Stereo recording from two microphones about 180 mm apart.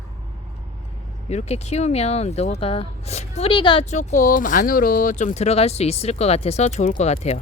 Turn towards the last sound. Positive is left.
turn(degrees=35)  # may be behind; listen again after turning